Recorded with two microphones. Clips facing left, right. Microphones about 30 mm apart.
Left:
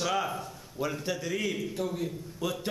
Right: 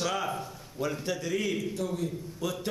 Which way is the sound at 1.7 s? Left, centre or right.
Centre.